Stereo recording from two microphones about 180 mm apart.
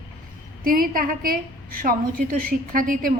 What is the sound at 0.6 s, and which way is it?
Speech, 50° right (ahead or behind).